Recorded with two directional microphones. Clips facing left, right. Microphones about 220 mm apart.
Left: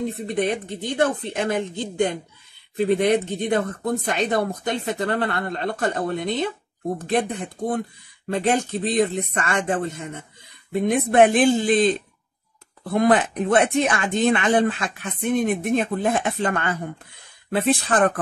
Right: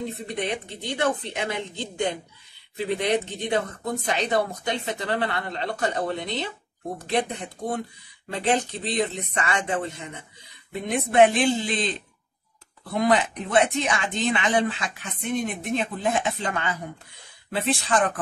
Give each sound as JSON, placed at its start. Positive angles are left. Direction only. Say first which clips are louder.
{"t": 0.1, "sound": "speech", "louder": "left 6 dB", "side_deg": 50}
{"t": 12.9, "sound": "speech", "louder": "left 4 dB", "side_deg": 50}